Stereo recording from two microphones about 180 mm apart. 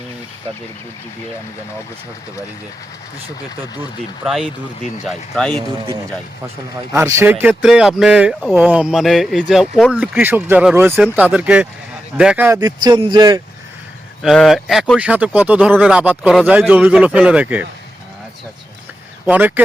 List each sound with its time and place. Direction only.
4.2 s speech: 5° right (ahead or behind)
5.5 s a man's voice: 25° right (ahead or behind)
6.9 s speech: 15° right (ahead or behind); by 10.0 s centre (ahead or behind)
10.0 s speech: 10° right (ahead or behind)
12.5 s a man's voice: 20° right (ahead or behind)
14.2 s speech: centre (ahead or behind)
19.2 s speech: 10° right (ahead or behind)